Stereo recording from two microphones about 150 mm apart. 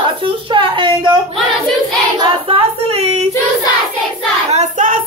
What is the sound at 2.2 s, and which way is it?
Female singing, 40° right (ahead or behind).